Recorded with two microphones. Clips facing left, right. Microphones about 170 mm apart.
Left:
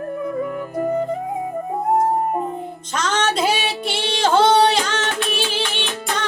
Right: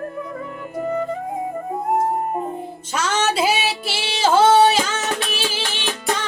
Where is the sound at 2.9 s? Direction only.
10° right (ahead or behind).